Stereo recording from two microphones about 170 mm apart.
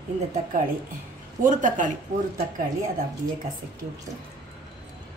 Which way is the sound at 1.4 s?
50° right (ahead or behind).